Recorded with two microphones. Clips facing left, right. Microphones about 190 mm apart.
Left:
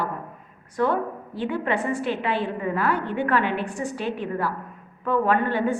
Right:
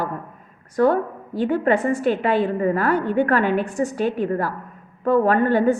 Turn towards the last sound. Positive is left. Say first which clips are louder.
# right 5 dB
turn(degrees=-40)  # may be behind; listen again after turning